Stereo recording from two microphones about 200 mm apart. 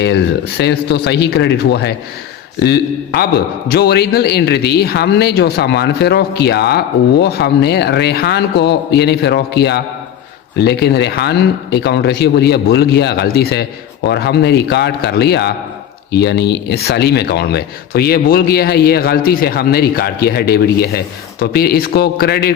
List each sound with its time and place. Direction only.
0.0 s a man's voice: 55° left (ahead or behind)